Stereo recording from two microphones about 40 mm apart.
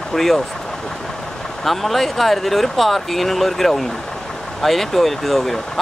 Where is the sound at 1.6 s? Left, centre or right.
Centre.